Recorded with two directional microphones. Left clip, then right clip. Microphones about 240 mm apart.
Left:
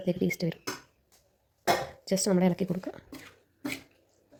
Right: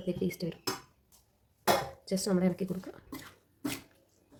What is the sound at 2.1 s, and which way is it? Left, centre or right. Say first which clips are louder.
Speech: left 6 dB; centre.